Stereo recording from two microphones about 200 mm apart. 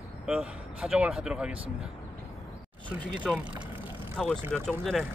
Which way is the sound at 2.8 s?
5° left (ahead or behind).